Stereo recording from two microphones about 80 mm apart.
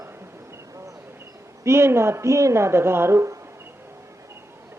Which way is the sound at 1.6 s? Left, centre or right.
Right.